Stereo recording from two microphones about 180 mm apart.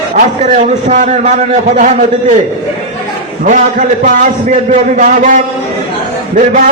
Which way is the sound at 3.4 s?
45° right (ahead or behind).